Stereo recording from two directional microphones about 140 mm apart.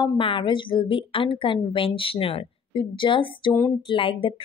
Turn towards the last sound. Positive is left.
turn(degrees=40)  # may be behind; listen again after turning